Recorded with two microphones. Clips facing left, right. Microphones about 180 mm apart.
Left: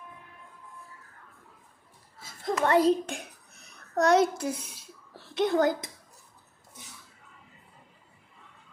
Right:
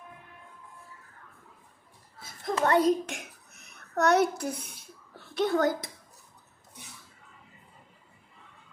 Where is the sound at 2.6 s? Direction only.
30° left (ahead or behind).